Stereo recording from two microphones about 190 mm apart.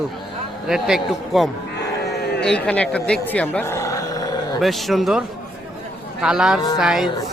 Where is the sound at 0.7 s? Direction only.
Centre (ahead or behind).